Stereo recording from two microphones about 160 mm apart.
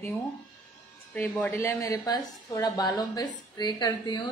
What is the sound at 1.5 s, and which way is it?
A woman's voice, 20° left (ahead or behind).